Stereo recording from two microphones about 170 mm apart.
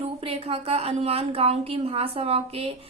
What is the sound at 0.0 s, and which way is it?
A woman's voice, 35° right (ahead or behind).